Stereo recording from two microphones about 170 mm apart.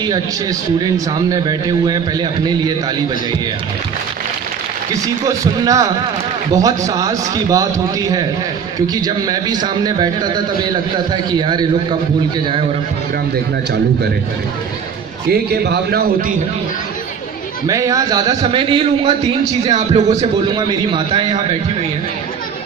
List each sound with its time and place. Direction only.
0.9 s a man's voice: 20° right (ahead or behind)
5.2 s a man's voice: 20° right (ahead or behind)
15.3 s a man's voice: 70° right (ahead or behind)
17.7 s a man's voice: 20° right (ahead or behind)
19.6 s speech: 40° right (ahead or behind)
20.6 s a man's voice: 25° right (ahead or behind)